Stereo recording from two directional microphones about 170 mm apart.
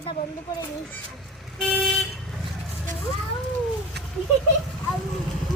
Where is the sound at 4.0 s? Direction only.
75° right (ahead or behind).